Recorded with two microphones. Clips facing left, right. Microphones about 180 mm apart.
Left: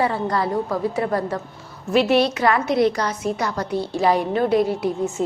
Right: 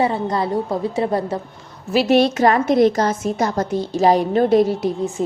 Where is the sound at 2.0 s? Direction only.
45° right (ahead or behind).